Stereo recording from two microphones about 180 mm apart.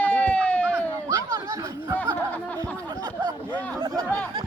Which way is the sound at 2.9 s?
20° right (ahead or behind).